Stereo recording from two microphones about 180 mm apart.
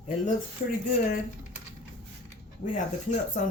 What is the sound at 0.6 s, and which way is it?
Speech, 55° left (ahead or behind).